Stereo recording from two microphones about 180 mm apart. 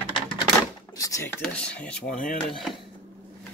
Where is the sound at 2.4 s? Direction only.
Centre (ahead or behind).